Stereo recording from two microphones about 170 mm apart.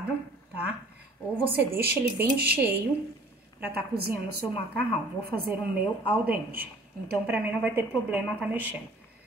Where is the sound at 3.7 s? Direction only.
65° right (ahead or behind).